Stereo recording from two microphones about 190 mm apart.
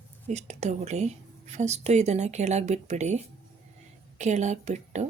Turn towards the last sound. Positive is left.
turn(degrees=-35)  # may be behind; listen again after turning